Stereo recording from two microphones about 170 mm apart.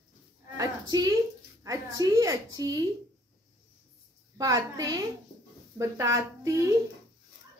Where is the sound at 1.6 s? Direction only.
20° right (ahead or behind).